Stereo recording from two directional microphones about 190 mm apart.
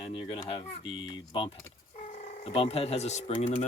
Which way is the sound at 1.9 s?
40° left (ahead or behind).